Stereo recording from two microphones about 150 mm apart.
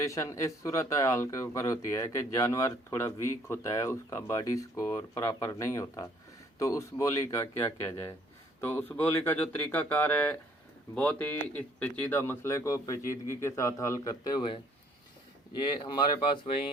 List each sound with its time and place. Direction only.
0.0 s a man's voice: 20° left (ahead or behind)